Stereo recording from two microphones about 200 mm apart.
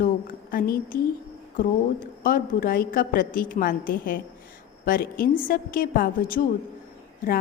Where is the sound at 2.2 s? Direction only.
45° left (ahead or behind).